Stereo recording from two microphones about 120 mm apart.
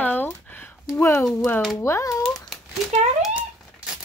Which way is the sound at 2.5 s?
Centre (ahead or behind).